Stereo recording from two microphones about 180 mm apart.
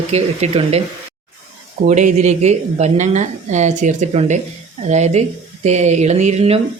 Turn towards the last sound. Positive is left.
turn(degrees=-35)  # may be behind; listen again after turning